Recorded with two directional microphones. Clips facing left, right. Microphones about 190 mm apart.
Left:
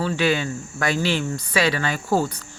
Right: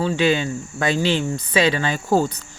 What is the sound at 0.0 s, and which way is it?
Speech, 20° right (ahead or behind).